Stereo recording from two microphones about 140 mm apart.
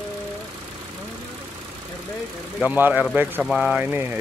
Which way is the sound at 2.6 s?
15° right (ahead or behind).